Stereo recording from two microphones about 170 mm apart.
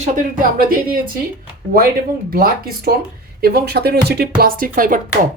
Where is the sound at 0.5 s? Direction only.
55° right (ahead or behind).